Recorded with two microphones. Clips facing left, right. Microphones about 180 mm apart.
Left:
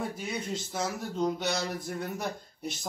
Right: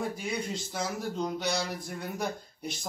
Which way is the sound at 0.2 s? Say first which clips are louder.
Right 1 dB; centre (ahead or behind).